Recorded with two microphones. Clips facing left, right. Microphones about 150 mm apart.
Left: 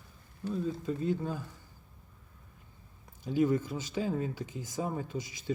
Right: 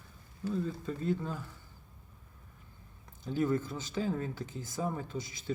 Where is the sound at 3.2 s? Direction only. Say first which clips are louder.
Left 3 dB; 10° left (ahead or behind).